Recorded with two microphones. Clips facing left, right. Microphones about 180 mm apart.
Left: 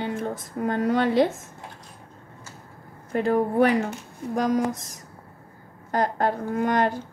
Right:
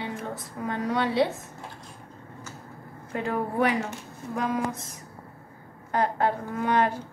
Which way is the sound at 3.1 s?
40° left (ahead or behind).